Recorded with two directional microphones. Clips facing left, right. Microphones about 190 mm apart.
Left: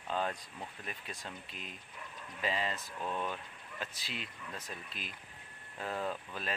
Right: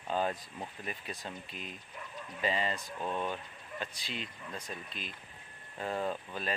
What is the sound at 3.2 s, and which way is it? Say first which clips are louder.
Speech: right 3 dB; centre (ahead or behind).